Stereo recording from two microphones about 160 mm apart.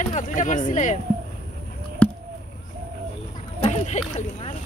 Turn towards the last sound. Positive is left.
turn(degrees=40)  # may be behind; listen again after turning